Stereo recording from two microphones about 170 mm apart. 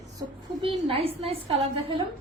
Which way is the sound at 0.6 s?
35° right (ahead or behind).